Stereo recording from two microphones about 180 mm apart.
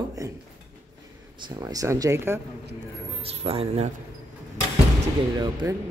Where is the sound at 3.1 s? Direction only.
35° right (ahead or behind).